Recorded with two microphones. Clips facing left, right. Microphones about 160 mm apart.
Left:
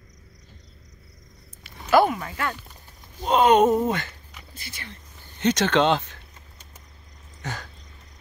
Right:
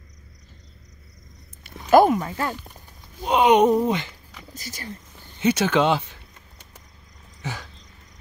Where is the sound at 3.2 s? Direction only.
10° right (ahead or behind).